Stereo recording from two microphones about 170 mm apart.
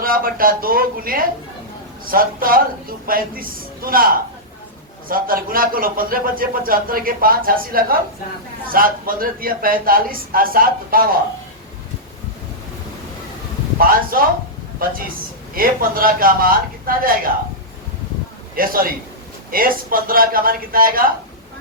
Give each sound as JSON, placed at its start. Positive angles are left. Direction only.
{"t": 0.0, "sound": "a man's voice", "side_deg": -60}
{"t": 13.7, "sound": "a man's voice", "side_deg": -55}
{"t": 18.5, "sound": "a man's voice", "side_deg": -55}